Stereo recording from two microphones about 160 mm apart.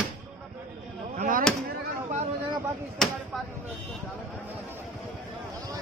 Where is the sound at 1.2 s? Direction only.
60° right (ahead or behind).